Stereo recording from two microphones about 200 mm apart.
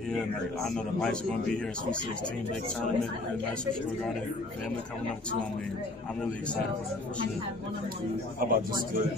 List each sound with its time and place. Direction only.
0.1 s a man's voice: centre (ahead or behind)
8.4 s a man's voice: 45° right (ahead or behind)